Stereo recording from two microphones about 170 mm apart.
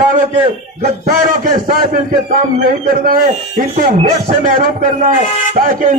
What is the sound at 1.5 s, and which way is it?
Speech, 55° right (ahead or behind).